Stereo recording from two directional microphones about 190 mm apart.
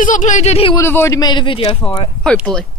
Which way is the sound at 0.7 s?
15° left (ahead or behind).